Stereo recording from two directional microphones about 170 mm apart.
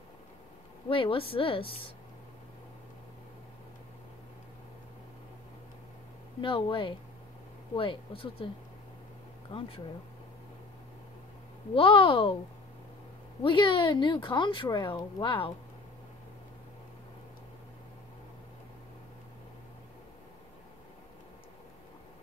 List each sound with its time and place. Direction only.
0.8 s a woman's voice: 30° left (ahead or behind)
6.4 s a woman's voice: 30° left (ahead or behind)
9.5 s a woman's voice: 30° left (ahead or behind)
11.7 s a woman's voice: 30° left (ahead or behind)
13.4 s speech: 30° left (ahead or behind)